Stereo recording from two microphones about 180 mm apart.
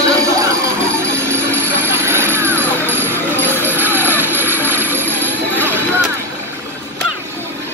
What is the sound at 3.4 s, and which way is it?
Vehicle, 10° left (ahead or behind).